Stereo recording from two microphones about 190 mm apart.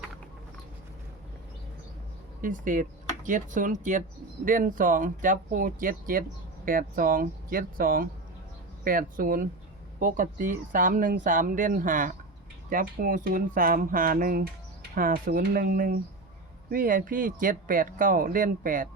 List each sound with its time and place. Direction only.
2.4 s speech: 45° right (ahead or behind)